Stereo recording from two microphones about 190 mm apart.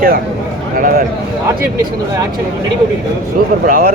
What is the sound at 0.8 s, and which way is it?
Speech, 50° right (ahead or behind).